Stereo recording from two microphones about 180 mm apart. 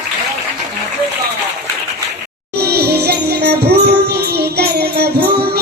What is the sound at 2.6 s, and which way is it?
Music, 60° right (ahead or behind).